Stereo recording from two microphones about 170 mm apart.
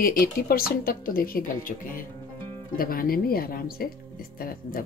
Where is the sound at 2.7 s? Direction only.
60° left (ahead or behind).